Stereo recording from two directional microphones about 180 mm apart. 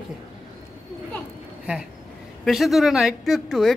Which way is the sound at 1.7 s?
5° right (ahead or behind).